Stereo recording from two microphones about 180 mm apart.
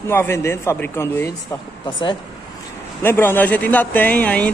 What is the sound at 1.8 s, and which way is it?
Speech, 25° left (ahead or behind).